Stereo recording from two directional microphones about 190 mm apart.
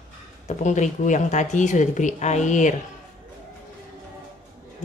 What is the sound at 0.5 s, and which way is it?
Speech, 40° left (ahead or behind).